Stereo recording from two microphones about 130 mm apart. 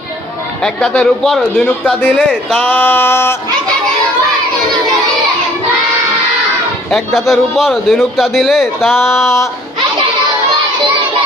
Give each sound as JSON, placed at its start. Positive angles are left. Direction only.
{"t": 0.6, "sound": "a man's voice", "side_deg": 0}
{"t": 1.6, "sound": "speech", "side_deg": 15}
{"t": 6.9, "sound": "a man's voice", "side_deg": 0}
{"t": 8.9, "sound": "speech", "side_deg": 20}